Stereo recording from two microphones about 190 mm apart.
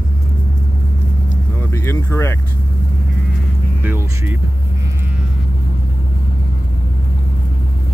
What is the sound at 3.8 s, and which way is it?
Vehicle, 10° right (ahead or behind).